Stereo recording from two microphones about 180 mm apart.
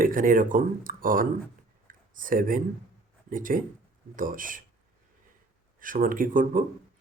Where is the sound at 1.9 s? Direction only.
50° right (ahead or behind).